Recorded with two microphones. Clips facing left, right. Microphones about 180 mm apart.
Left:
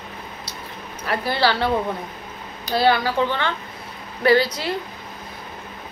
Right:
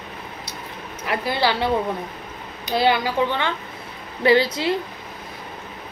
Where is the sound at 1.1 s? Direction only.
20° right (ahead or behind).